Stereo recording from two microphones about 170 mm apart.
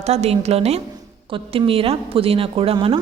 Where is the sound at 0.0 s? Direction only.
40° right (ahead or behind).